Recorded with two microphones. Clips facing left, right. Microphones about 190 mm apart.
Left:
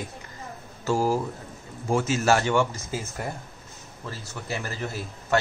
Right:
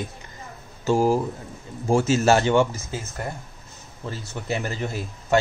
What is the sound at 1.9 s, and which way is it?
Speech, 25° right (ahead or behind).